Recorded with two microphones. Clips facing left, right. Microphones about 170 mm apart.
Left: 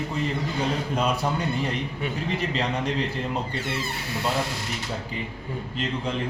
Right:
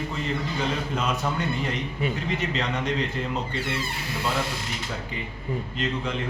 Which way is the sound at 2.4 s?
30° left (ahead or behind).